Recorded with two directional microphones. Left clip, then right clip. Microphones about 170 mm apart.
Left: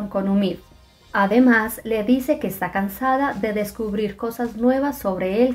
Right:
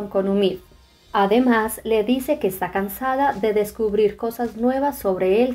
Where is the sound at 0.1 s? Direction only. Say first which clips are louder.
Right 4 dB; 25° right (ahead or behind).